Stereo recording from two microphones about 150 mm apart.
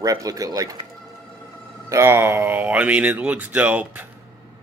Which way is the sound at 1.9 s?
15° right (ahead or behind).